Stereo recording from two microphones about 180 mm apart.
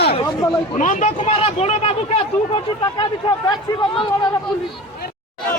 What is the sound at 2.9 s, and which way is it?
Speech, 25° left (ahead or behind).